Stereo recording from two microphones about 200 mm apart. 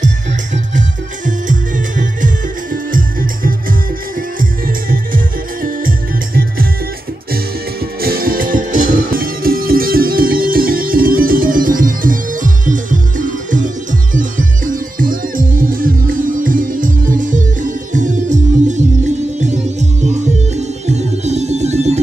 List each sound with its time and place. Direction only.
0.7 s music: 40° right (ahead or behind)
8.0 s music: 45° right (ahead or behind)
14.7 s music: 45° right (ahead or behind)